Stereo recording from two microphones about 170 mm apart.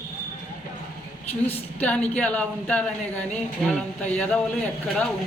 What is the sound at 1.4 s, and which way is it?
Speech, 10° left (ahead or behind).